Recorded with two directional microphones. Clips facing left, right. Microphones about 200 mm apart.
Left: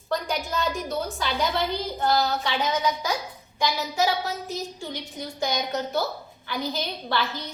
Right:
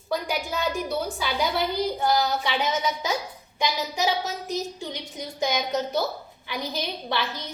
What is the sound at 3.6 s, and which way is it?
A woman's voice, 20° right (ahead or behind).